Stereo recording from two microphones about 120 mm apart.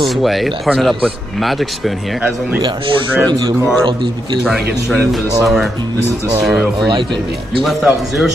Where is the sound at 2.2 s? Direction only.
10° right (ahead or behind).